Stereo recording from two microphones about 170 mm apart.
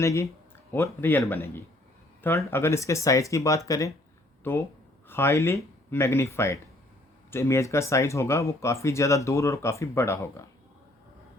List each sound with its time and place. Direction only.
0.0 s speech: 15° left (ahead or behind)